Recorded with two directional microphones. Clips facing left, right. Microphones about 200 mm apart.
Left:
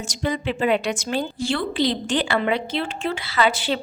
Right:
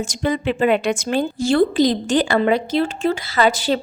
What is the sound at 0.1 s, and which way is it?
A woman's voice, 55° right (ahead or behind).